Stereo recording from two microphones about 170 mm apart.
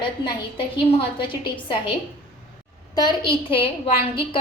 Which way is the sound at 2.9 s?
25° left (ahead or behind).